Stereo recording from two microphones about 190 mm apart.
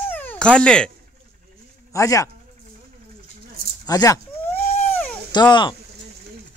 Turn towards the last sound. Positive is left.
turn(degrees=25)  # may be behind; listen again after turning